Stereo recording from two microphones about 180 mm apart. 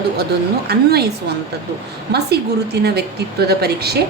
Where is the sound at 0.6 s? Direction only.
65° right (ahead or behind).